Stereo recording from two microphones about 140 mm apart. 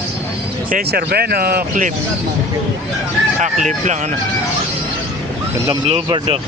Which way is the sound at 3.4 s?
60° right (ahead or behind).